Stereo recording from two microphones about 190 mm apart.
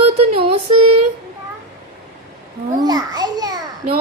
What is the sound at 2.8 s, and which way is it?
Speech, 20° right (ahead or behind).